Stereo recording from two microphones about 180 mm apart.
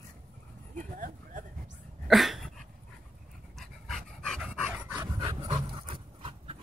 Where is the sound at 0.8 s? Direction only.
50° right (ahead or behind).